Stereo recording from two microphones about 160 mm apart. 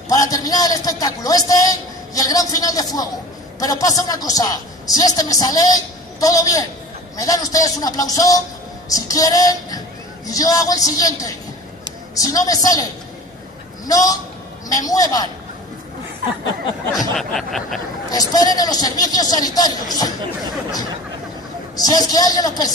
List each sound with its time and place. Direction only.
0.1 s a woman's voice: 20° left (ahead or behind)
13.8 s a woman's voice: 20° left (ahead or behind)
17.2 s a sound: centre (ahead or behind)
18.1 s a woman's voice: 25° left (ahead or behind)
21.7 s a woman's voice: 25° left (ahead or behind)